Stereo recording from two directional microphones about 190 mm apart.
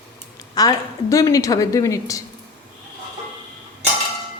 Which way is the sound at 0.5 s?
20° left (ahead or behind).